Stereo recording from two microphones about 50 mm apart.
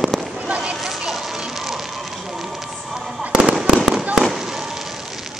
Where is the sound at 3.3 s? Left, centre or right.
Centre.